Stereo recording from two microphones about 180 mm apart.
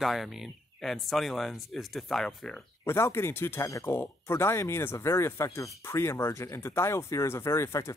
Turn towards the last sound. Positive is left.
turn(degrees=15)  # may be behind; listen again after turning